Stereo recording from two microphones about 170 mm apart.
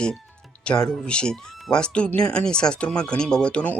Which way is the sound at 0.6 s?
5° left (ahead or behind).